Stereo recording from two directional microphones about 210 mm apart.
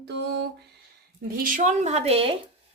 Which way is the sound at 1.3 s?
40° right (ahead or behind).